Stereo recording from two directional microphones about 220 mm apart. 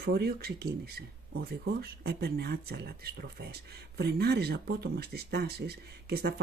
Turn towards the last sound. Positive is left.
turn(degrees=-45)  # may be behind; listen again after turning